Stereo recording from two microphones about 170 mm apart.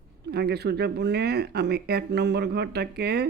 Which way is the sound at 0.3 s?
70° right (ahead or behind).